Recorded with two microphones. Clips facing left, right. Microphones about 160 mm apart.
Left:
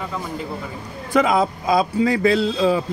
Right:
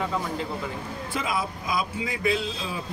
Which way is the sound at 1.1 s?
85° left.